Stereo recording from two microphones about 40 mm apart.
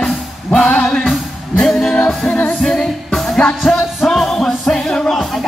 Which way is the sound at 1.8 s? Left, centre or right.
Centre.